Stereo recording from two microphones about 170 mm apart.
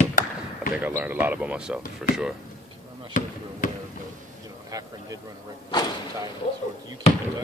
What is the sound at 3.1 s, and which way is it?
Speech, 50° left (ahead or behind).